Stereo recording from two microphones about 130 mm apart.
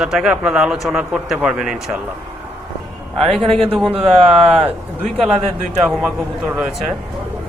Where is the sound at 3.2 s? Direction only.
50° right (ahead or behind).